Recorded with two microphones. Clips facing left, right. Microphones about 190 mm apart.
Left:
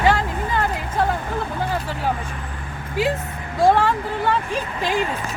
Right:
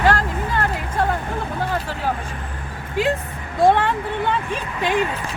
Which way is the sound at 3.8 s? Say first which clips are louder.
Left 1 dB; centre (ahead or behind).